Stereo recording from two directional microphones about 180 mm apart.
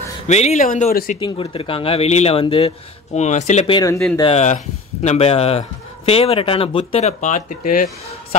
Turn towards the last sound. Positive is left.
turn(degrees=45)  # may be behind; listen again after turning